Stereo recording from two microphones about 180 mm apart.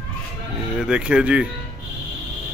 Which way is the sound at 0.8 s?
5° right (ahead or behind).